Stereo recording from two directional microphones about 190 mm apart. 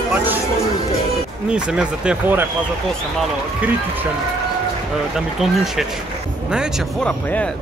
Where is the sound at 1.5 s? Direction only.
5° right (ahead or behind).